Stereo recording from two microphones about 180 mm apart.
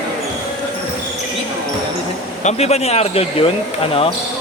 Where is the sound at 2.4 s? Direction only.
40° left (ahead or behind).